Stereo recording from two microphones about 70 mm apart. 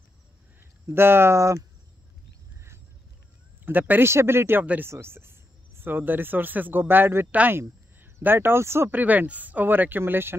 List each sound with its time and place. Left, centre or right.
0.6 s speech: right
3.6 s speech: right
4.1 s speech: right
8.9 s speech: right